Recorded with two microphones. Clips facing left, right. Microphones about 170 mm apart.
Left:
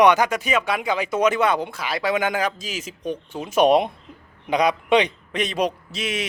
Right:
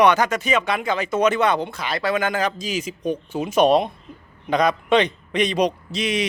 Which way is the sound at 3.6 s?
20° left (ahead or behind).